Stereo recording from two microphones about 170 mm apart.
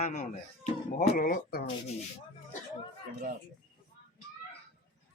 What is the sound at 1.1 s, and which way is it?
Speech, 60° left (ahead or behind).